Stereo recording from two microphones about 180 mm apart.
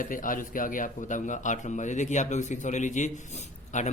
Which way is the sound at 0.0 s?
50° left (ahead or behind).